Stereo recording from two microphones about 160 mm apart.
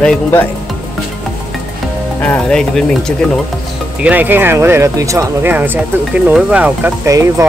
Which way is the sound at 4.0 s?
10° right (ahead or behind).